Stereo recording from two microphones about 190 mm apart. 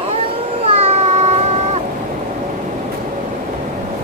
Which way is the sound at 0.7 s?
30° right (ahead or behind).